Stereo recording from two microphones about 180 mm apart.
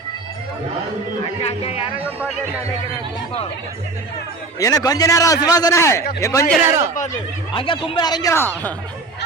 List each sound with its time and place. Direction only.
1.4 s a man's voice: 35° left (ahead or behind)
4.6 s a man's voice: 20° left (ahead or behind)
6.7 s speech: 15° right (ahead or behind)
7.5 s a man's voice: 30° left (ahead or behind); by 8.7 s 10° left (ahead or behind)